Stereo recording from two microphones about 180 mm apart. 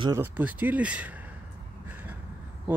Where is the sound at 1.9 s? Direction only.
10° right (ahead or behind).